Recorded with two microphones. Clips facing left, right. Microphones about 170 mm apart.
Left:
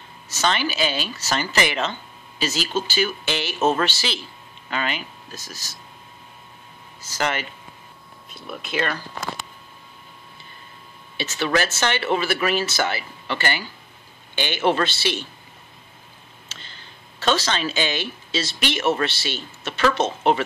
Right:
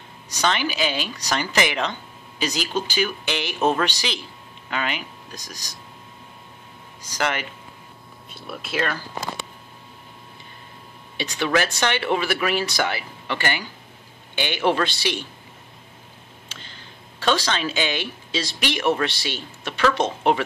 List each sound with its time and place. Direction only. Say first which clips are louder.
0.3 s speech: even; 15° right (ahead or behind)
7.1 s speech: even; 10° right (ahead or behind)
8.3 s speech: even; centre (ahead or behind)
11.1 s a man's voice: even; 15° right (ahead or behind)
16.5 s tick: right 1 dB; 15° right (ahead or behind)
17.2 s speech: even; 10° right (ahead or behind)